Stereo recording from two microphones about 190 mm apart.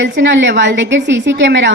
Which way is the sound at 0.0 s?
70° right (ahead or behind).